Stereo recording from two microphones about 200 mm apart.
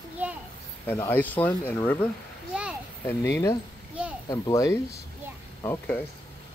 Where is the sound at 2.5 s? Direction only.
5° right (ahead or behind).